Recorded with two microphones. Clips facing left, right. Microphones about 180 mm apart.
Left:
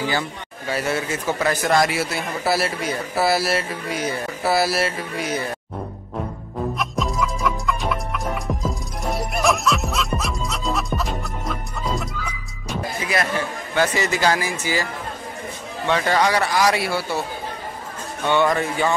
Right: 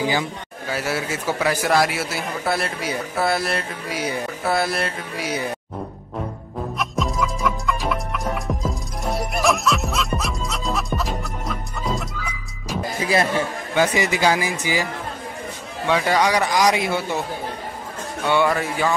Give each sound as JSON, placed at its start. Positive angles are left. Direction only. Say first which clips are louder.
{"t": 0.0, "sound": "a man's voice", "louder": "right 2 dB", "side_deg": -15}
{"t": 6.8, "sound": "music", "louder": "right 3 dB", "side_deg": 0}
{"t": 13.0, "sound": "music", "louder": "right 4 dB", "side_deg": -30}
{"t": 13.7, "sound": "speech", "louder": "right 1 dB", "side_deg": -15}
{"t": 15.9, "sound": "speech", "louder": "even", "side_deg": -10}
{"t": 18.2, "sound": "speech", "louder": "even", "side_deg": -10}